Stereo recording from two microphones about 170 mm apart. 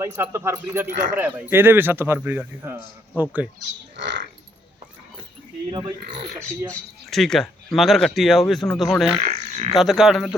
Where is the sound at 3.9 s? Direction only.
90° right.